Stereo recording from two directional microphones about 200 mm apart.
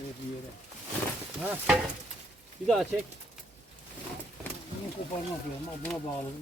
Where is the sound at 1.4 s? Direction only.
5° right (ahead or behind).